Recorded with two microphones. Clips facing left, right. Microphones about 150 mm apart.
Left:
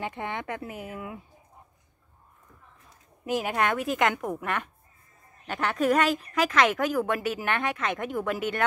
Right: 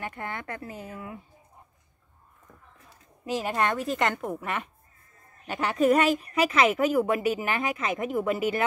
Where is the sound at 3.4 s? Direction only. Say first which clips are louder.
Right 1 dB; 5° left (ahead or behind).